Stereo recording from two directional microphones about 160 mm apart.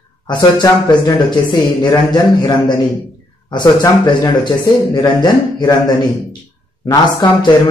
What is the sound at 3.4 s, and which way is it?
Speech, 25° left (ahead or behind).